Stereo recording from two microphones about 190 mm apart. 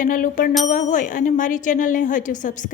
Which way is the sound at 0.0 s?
45° left (ahead or behind).